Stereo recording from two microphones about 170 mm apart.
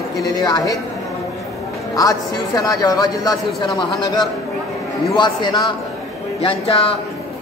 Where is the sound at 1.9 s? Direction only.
20° left (ahead or behind).